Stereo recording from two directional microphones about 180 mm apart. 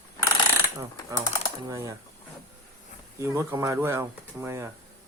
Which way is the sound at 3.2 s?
15° right (ahead or behind).